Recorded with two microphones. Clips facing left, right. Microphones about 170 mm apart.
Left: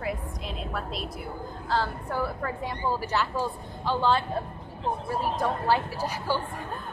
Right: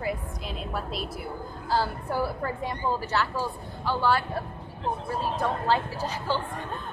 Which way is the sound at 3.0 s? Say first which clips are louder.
Even; 15° left (ahead or behind).